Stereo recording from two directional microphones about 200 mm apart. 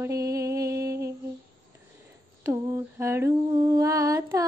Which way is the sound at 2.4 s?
15° right (ahead or behind).